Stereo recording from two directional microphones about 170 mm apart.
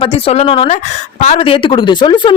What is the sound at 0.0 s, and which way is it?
Speech, 35° left (ahead or behind).